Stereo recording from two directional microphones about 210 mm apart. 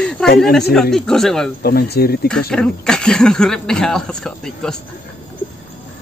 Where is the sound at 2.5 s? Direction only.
5° left (ahead or behind).